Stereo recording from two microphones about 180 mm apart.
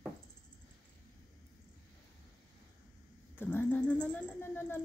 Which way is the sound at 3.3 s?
10° left (ahead or behind).